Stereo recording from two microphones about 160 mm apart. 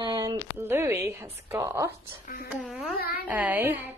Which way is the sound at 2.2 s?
70° left (ahead or behind).